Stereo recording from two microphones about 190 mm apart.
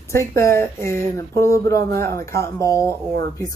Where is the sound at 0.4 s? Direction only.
15° left (ahead or behind).